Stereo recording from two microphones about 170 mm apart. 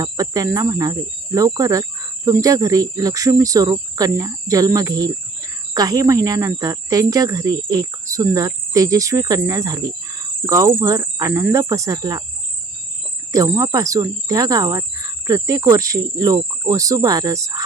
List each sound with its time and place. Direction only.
0.0 s cricket: 20° right (ahead or behind)
13.3 s cricket: 20° right (ahead or behind)